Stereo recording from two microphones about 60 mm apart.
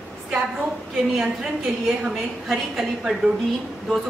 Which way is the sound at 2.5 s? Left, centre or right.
Centre.